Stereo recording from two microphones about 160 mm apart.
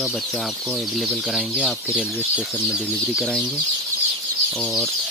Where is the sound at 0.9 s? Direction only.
Centre (ahead or behind).